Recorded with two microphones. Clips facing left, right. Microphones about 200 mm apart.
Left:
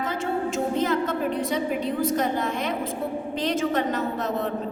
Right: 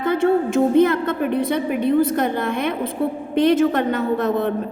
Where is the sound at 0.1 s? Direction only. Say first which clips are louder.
Right 14 dB; 60° right (ahead or behind).